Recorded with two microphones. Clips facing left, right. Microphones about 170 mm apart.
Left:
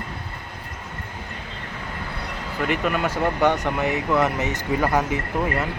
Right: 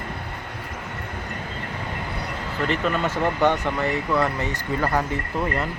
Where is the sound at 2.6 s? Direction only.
10° left (ahead or behind).